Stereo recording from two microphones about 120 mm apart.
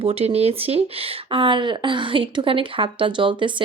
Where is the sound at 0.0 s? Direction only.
55° right (ahead or behind).